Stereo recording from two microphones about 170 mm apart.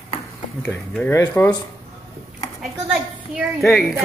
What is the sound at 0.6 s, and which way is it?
Speech, 5° left (ahead or behind).